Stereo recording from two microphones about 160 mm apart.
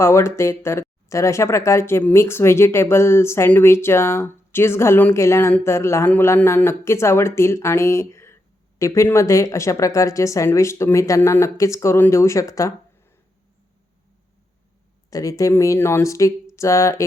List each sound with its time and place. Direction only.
0.0 s speech: 15° left (ahead or behind)
15.1 s speech: 20° left (ahead or behind)